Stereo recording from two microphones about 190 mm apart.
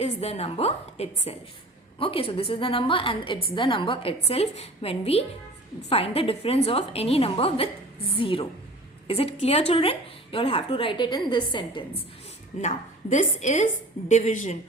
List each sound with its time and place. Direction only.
0.0 s a woman's voice: 35° left (ahead or behind)
12.5 s a woman's voice: 40° left (ahead or behind)